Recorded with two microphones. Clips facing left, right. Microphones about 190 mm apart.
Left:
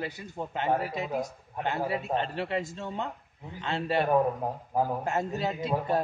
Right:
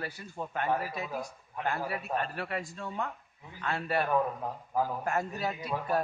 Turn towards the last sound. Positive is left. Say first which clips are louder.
# left 4 dB
turn(degrees=25)  # may be behind; listen again after turning